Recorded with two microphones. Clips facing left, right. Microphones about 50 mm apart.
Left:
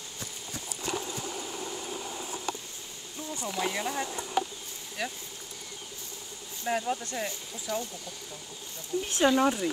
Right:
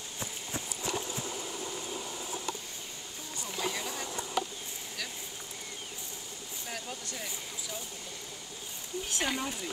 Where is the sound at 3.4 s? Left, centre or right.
Left.